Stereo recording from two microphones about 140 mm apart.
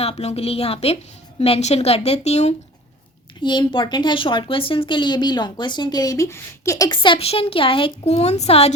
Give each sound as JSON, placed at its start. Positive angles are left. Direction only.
{"t": 0.0, "sound": "a woman's voice", "side_deg": 50}
{"t": 3.4, "sound": "speech", "side_deg": 35}